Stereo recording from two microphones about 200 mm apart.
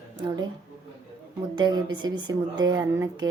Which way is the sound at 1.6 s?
20° right (ahead or behind).